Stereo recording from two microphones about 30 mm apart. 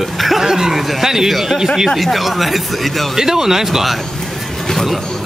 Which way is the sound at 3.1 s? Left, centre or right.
Centre.